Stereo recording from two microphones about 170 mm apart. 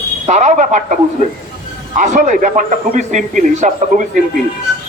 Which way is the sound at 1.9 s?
50° right (ahead or behind).